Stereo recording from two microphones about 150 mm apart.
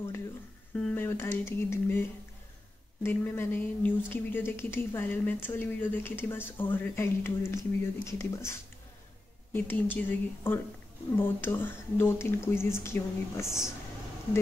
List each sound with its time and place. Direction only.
0.7 s a woman's voice: 10° left (ahead or behind)